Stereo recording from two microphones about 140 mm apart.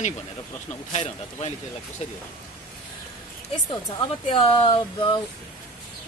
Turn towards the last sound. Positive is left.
turn(degrees=35)  # may be behind; listen again after turning